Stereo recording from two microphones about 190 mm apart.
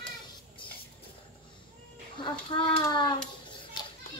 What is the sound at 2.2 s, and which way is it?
Speech, 25° left (ahead or behind).